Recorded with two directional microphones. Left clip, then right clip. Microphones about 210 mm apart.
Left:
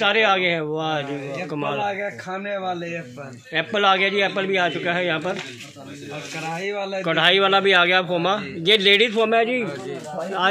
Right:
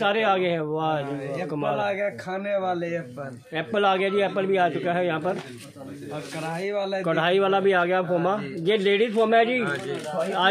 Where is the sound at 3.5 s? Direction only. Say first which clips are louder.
Left 4 dB; 10° left (ahead or behind).